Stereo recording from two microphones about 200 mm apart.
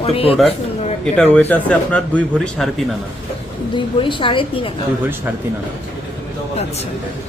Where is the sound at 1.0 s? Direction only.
10° left (ahead or behind).